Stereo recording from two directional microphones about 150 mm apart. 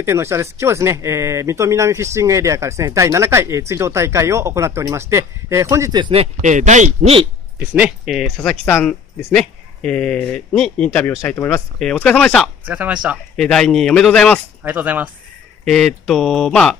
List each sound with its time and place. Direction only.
0.0 s speech: 15° right (ahead or behind)
6.4 s speech: 55° right (ahead or behind)
7.5 s speech: 10° right (ahead or behind)
8.6 s speech: 15° left (ahead or behind)
9.3 s speech: 5° left (ahead or behind)
11.1 s speech: 15° left (ahead or behind)
12.6 s speech: 10° right (ahead or behind)
13.4 s speech: 5° left (ahead or behind)
14.6 s speech: 10° right (ahead or behind)
15.6 s speech: 5° left (ahead or behind)